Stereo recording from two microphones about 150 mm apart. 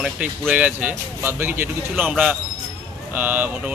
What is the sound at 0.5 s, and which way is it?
Speech, 10° right (ahead or behind).